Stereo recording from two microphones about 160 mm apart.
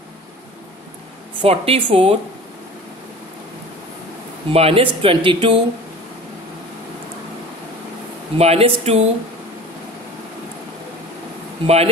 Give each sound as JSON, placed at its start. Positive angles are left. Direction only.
{"t": 1.4, "sound": "speech", "side_deg": -35}
{"t": 4.5, "sound": "speech", "side_deg": -35}
{"t": 8.4, "sound": "speech", "side_deg": -40}
{"t": 11.6, "sound": "speech", "side_deg": -40}